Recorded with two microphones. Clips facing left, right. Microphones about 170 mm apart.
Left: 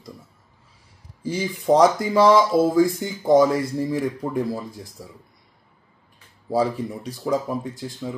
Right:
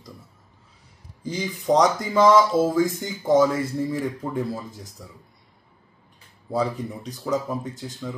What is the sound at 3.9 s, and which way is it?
Speech, 10° left (ahead or behind).